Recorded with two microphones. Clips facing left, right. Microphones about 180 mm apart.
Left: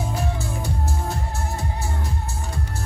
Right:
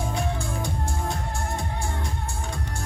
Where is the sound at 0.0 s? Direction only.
5° left (ahead or behind).